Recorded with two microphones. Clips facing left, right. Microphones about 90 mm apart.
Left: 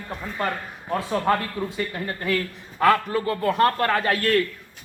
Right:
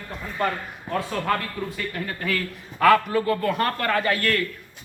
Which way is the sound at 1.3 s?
25° left (ahead or behind).